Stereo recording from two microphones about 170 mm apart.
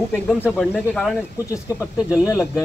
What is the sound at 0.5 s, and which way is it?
Speech, centre (ahead or behind).